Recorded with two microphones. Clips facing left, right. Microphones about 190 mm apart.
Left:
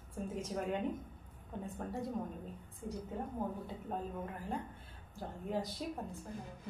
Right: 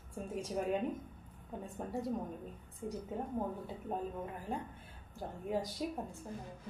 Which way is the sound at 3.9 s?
15° right (ahead or behind).